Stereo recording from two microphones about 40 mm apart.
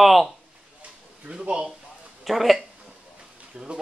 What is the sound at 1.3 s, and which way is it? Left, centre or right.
Speech, right.